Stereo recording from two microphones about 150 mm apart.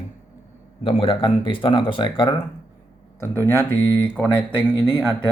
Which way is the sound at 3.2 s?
15° left (ahead or behind).